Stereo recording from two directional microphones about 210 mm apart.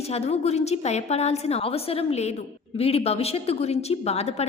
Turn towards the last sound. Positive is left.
turn(degrees=30)  # may be behind; listen again after turning